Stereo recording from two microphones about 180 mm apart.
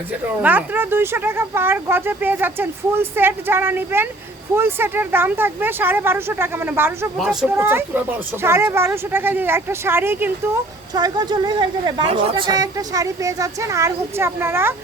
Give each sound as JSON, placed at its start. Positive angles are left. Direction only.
{"t": 0.4, "sound": "speech", "side_deg": -10}
{"t": 10.9, "sound": "a woman's voice", "side_deg": -20}